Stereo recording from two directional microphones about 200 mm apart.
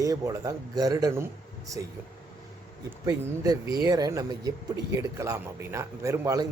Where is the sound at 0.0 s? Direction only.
15° right (ahead or behind).